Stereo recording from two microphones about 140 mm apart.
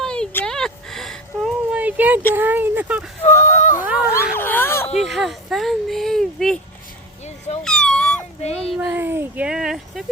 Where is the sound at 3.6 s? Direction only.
65° left (ahead or behind).